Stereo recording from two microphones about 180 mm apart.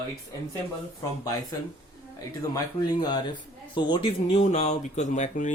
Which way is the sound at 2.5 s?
20° left (ahead or behind).